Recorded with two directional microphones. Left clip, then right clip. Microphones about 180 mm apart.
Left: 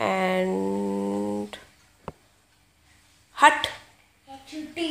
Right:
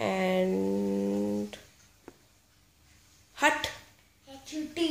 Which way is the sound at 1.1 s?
10° left (ahead or behind).